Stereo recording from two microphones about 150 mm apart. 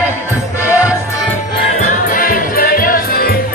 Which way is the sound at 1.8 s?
60° left (ahead or behind).